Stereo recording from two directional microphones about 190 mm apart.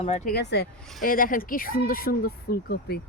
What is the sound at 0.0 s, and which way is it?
Speech, 35° left (ahead or behind).